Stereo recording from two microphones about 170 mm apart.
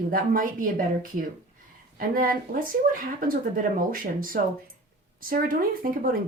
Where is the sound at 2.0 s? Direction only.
55° right (ahead or behind).